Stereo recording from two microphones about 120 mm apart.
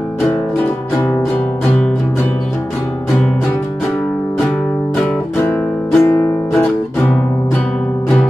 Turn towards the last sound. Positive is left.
turn(degrees=15)  # may be behind; listen again after turning